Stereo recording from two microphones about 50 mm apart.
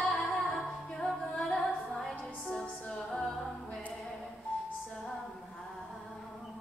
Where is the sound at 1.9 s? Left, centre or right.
Centre.